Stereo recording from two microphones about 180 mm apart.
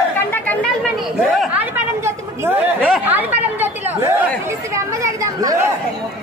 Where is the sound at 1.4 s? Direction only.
10° right (ahead or behind).